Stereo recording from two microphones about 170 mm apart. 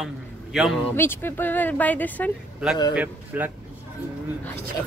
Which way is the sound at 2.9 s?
10° right (ahead or behind).